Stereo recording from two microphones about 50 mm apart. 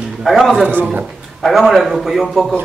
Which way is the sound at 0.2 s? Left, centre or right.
Centre.